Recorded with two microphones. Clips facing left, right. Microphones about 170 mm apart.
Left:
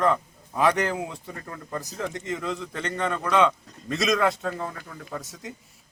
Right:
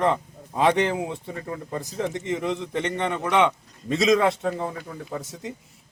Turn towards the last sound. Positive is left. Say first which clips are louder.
# right 3 dB
turn(degrees=-20)  # may be behind; listen again after turning